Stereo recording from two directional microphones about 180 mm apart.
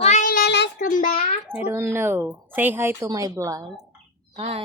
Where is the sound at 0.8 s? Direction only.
45° left (ahead or behind).